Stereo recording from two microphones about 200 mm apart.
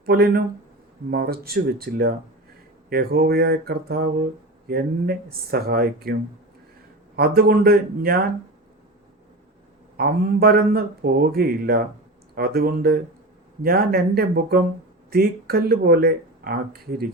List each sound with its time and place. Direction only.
0.0 s speech: 50° right (ahead or behind)
7.2 s speech: 50° right (ahead or behind)
10.0 s speech: 50° right (ahead or behind)